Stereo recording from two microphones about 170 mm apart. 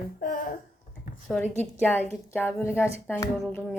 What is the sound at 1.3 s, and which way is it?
Speech, 10° left (ahead or behind).